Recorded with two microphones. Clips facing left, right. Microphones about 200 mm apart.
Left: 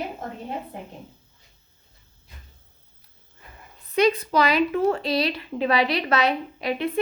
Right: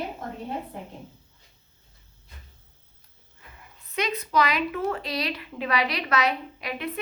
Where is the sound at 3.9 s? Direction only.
30° left (ahead or behind).